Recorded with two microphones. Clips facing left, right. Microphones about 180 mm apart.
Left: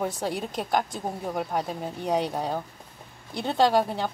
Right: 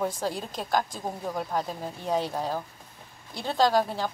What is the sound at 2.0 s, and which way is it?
Speech, centre (ahead or behind).